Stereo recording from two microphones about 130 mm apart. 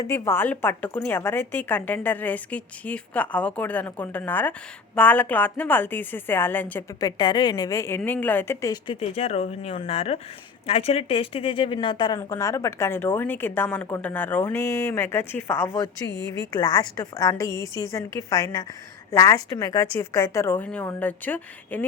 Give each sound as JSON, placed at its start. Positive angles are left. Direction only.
{"t": 0.0, "sound": "a woman's voice", "side_deg": 20}
{"t": 7.0, "sound": "a woman's voice", "side_deg": 35}
{"t": 9.0, "sound": "a woman's voice", "side_deg": 50}
{"t": 16.5, "sound": "a woman's voice", "side_deg": 30}